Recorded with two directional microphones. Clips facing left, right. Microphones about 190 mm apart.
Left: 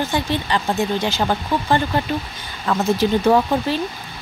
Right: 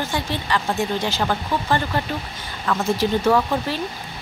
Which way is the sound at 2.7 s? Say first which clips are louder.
Left 2 dB; 30° left (ahead or behind).